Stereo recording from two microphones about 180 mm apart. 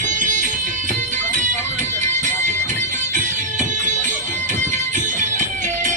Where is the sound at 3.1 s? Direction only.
45° right (ahead or behind).